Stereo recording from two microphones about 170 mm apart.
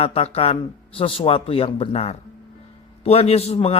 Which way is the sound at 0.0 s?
40° left (ahead or behind).